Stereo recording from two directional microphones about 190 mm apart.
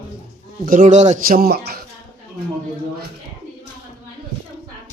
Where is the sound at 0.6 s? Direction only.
45° right (ahead or behind).